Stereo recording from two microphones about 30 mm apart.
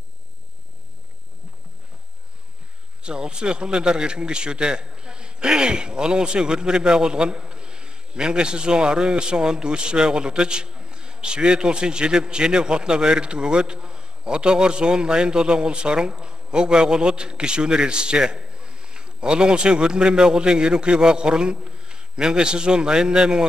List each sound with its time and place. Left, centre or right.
3.0 s a man's voice: right